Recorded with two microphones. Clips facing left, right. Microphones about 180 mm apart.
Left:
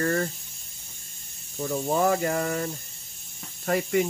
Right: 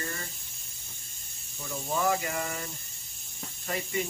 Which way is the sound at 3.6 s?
65° left (ahead or behind).